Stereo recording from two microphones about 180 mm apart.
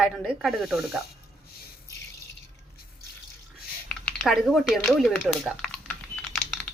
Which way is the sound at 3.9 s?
5° left (ahead or behind).